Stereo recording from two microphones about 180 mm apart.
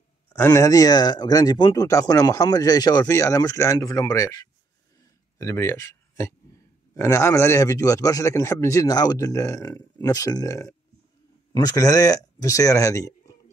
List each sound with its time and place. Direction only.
0.3 s speech: 15° left (ahead or behind)
5.0 s a sound: 15° left (ahead or behind)
7.0 s speech: 15° left (ahead or behind)